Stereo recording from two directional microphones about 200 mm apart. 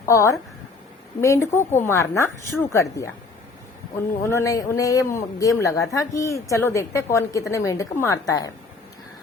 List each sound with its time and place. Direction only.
0.0 s a man's voice: 15° left (ahead or behind)